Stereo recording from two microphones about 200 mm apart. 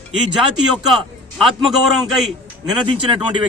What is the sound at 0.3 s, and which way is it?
A man's voice, centre (ahead or behind).